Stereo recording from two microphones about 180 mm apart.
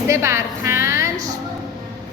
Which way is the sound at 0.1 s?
15° right (ahead or behind).